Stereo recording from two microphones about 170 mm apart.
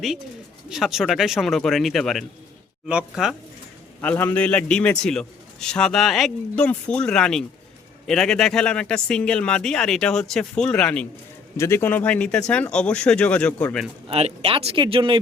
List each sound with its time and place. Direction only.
0.7 s a man's voice: centre (ahead or behind)
4.0 s a man's voice: 10° left (ahead or behind)
14.1 s speech: 35° right (ahead or behind)